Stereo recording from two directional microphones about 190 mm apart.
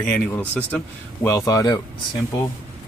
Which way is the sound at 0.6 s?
10° left (ahead or behind).